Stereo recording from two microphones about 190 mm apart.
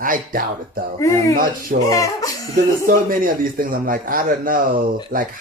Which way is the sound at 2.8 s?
45° right (ahead or behind).